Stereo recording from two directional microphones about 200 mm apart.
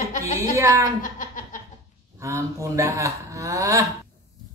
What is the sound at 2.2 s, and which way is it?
A woman's voice, 15° right (ahead or behind).